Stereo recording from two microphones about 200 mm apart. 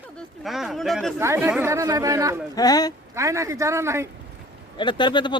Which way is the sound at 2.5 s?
20° left (ahead or behind).